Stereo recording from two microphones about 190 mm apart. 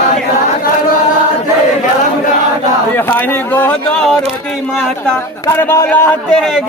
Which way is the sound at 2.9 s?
10° left (ahead or behind).